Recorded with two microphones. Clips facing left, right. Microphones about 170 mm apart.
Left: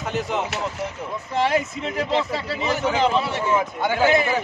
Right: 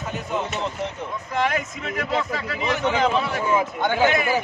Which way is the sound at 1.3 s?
30° left (ahead or behind).